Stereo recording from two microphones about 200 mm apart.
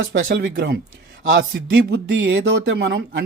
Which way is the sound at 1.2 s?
70° right (ahead or behind).